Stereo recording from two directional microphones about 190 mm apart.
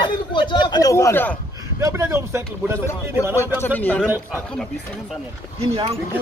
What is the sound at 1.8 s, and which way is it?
Speech, 15° right (ahead or behind).